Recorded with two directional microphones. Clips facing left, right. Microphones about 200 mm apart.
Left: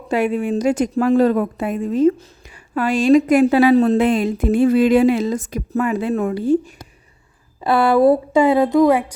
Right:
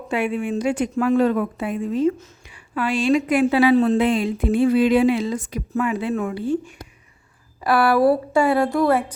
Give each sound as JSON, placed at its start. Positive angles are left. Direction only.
{"t": 0.1, "sound": "a woman's voice", "side_deg": 40}
{"t": 7.6, "sound": "a woman's voice", "side_deg": 25}